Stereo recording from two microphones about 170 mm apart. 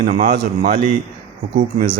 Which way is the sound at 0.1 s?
45° right (ahead or behind).